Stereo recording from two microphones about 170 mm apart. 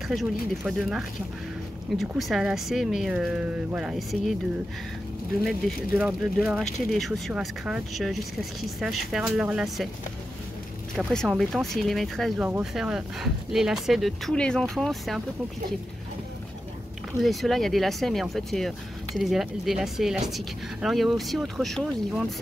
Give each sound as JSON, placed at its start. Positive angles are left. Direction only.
{"t": 0.1, "sound": "speech", "side_deg": 0}
{"t": 5.9, "sound": "speech", "side_deg": -5}
{"t": 11.0, "sound": "speech", "side_deg": 0}
{"t": 17.2, "sound": "speech", "side_deg": 0}